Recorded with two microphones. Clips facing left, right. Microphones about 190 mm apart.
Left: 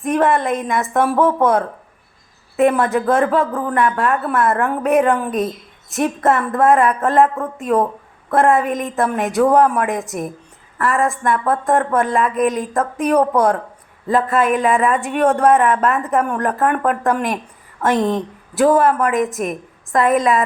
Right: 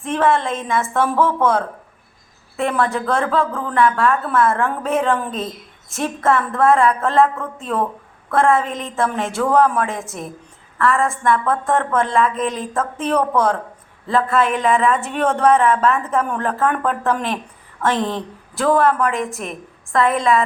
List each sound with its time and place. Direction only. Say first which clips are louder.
0.0 s a woman's voice: left 2 dB; 15° left (ahead or behind)
14.3 s speech: even; 40° left (ahead or behind)
14.5 s a woman's voice: left 1 dB; 10° left (ahead or behind)